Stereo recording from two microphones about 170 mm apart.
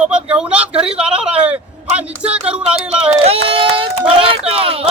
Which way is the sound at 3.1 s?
35° right (ahead or behind).